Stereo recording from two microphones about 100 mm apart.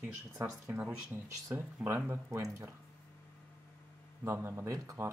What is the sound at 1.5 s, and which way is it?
Speech, 20° right (ahead or behind).